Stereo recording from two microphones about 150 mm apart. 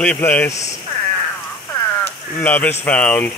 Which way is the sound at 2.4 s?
10° left (ahead or behind).